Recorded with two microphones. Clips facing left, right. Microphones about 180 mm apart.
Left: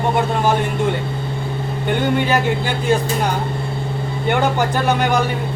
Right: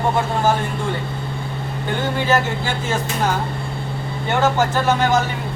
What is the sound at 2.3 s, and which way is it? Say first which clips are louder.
Speech: left 1 dB; 15° left (ahead or behind).